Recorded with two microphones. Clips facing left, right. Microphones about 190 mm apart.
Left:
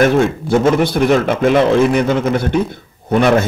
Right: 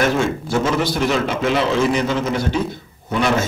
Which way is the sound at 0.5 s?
55° left (ahead or behind).